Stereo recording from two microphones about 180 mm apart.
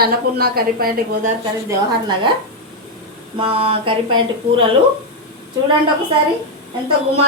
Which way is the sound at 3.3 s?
30° right (ahead or behind).